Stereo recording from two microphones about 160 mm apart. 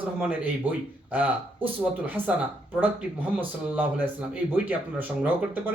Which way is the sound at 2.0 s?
10° right (ahead or behind).